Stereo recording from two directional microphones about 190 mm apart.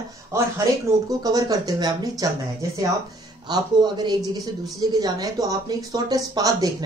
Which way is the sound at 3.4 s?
20° right (ahead or behind).